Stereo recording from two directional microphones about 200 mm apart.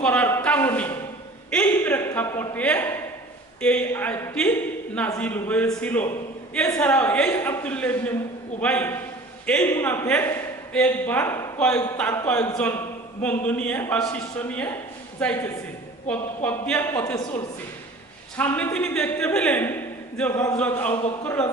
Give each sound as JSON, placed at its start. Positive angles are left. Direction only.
{"t": 0.0, "sound": "a sound", "side_deg": 5}
{"t": 3.6, "sound": "a man's voice", "side_deg": 5}
{"t": 18.3, "sound": "a man's voice", "side_deg": 10}